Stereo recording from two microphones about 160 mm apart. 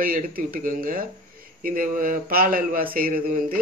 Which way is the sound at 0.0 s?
65° right (ahead or behind).